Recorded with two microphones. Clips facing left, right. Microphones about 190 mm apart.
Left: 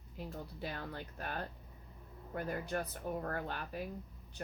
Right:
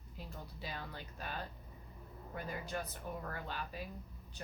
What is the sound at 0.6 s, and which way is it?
Speech, 55° left (ahead or behind).